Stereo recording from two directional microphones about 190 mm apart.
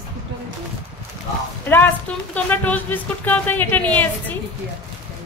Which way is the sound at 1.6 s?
10° left (ahead or behind).